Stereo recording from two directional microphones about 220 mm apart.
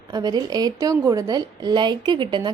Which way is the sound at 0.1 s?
20° right (ahead or behind).